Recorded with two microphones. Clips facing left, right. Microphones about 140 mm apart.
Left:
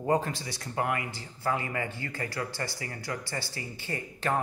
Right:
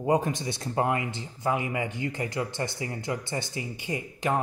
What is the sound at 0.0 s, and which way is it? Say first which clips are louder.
Speech: right 3 dB; 15° right (ahead or behind).